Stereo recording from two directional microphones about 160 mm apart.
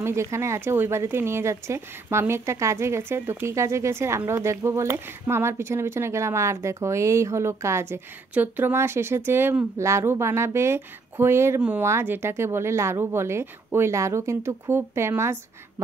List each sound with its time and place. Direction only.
0.0 s speech: 15° right (ahead or behind)